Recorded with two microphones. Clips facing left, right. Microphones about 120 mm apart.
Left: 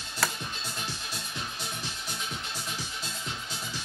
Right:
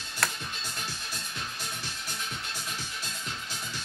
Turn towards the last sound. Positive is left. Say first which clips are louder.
# left 1 dB
turn(degrees=5)  # may be behind; listen again after turning